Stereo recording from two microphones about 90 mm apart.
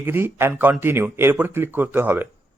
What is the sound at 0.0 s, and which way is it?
Speech, 25° right (ahead or behind).